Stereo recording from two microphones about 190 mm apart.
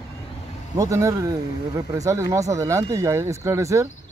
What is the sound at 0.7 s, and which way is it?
Speech, 15° right (ahead or behind).